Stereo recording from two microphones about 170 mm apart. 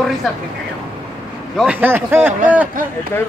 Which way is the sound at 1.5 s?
5° right (ahead or behind).